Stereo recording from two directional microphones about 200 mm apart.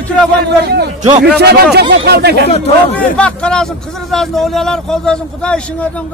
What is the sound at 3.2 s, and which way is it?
A man's voice, 5° left (ahead or behind).